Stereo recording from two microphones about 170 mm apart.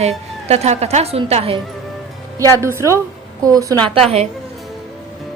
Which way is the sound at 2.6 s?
15° right (ahead or behind).